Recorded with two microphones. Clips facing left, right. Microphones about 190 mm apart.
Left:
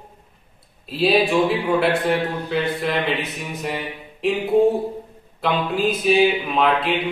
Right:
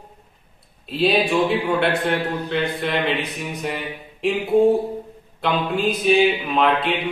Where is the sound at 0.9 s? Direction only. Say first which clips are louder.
Left 1 dB; centre (ahead or behind).